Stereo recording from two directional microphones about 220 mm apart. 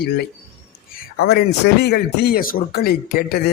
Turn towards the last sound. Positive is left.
turn(degrees=45)  # may be behind; listen again after turning